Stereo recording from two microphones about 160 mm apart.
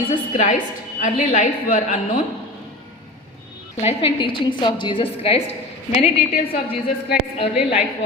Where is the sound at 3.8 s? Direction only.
40° left (ahead or behind).